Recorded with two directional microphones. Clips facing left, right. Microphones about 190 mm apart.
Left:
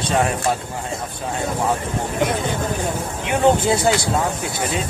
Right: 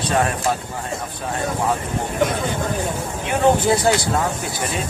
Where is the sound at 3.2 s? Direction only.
20° left (ahead or behind).